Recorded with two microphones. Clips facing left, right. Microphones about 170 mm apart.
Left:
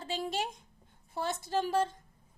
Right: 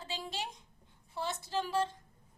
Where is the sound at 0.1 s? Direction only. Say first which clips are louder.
Left 7 dB; 50° left (ahead or behind).